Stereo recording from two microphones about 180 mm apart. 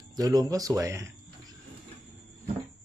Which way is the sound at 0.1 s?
20° right (ahead or behind).